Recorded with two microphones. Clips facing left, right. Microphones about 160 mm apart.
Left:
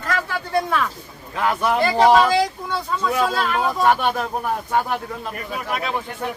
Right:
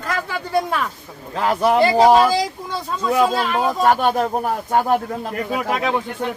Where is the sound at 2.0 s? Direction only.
10° right (ahead or behind).